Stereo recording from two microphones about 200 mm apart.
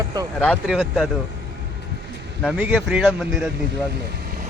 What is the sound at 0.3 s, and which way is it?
Speech, 5° left (ahead or behind).